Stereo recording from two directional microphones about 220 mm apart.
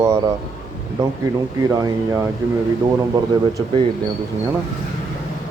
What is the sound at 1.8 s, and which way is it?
Speech, 15° right (ahead or behind).